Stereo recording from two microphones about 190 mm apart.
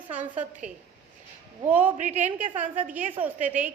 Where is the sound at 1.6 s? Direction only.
10° right (ahead or behind).